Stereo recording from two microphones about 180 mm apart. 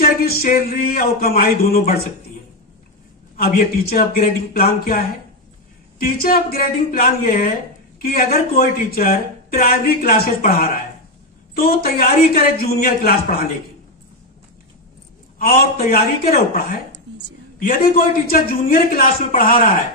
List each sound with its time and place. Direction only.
0.0 s speech: 55° left (ahead or behind)
3.3 s speech: 55° left (ahead or behind)
15.3 s speech: 55° left (ahead or behind)